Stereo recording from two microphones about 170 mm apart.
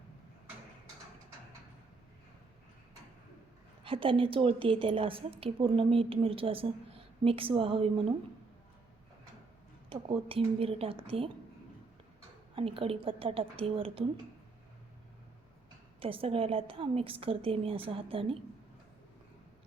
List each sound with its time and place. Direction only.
3.8 s a woman's voice: 30° right (ahead or behind)
9.9 s a woman's voice: 35° right (ahead or behind)
12.5 s a woman's voice: 35° right (ahead or behind)
16.0 s a woman's voice: 35° right (ahead or behind)